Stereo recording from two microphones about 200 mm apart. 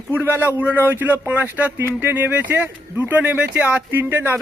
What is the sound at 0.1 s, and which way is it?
A man's voice, 10° right (ahead or behind).